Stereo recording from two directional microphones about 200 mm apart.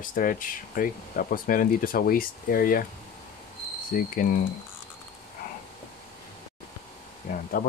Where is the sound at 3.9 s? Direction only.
45° left (ahead or behind).